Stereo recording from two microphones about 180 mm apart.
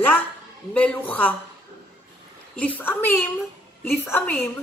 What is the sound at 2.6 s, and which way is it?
A woman's voice, 10° left (ahead or behind).